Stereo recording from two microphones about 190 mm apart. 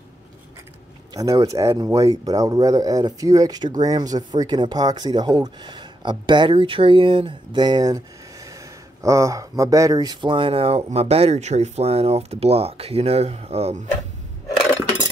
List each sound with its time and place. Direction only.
1.1 s speech: 20° right (ahead or behind)
9.0 s speech: 15° right (ahead or behind); by 13.8 s 35° right (ahead or behind)